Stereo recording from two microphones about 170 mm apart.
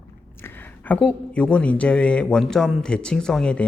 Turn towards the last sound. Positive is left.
turn(degrees=5)  # may be behind; listen again after turning